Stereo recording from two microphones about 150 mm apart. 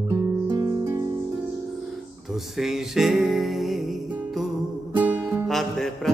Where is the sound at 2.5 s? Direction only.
Centre (ahead or behind).